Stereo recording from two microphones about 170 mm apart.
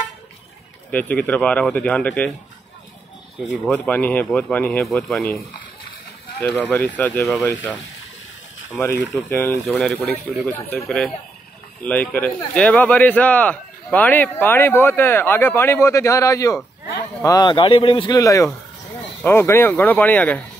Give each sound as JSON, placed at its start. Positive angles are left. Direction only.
{"t": 0.9, "sound": "speech", "side_deg": 10}
{"t": 3.7, "sound": "speech", "side_deg": 10}
{"t": 6.4, "sound": "speech", "side_deg": 10}
{"t": 8.7, "sound": "speech", "side_deg": 10}
{"t": 10.9, "sound": "speech", "side_deg": 0}